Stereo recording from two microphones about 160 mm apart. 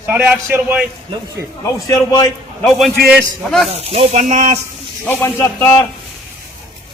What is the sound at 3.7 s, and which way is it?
Sizzle, 40° right (ahead or behind).